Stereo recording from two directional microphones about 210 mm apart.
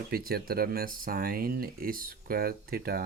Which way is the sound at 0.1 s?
45° right (ahead or behind).